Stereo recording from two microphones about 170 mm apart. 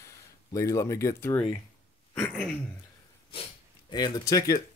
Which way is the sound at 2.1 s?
10° left (ahead or behind).